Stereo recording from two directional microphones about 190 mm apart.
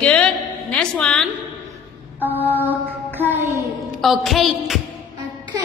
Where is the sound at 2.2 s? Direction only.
10° right (ahead or behind).